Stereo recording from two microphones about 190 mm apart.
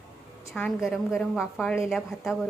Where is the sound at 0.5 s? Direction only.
Centre (ahead or behind).